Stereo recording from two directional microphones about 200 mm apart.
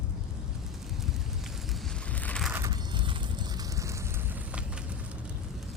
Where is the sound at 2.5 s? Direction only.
20° right (ahead or behind).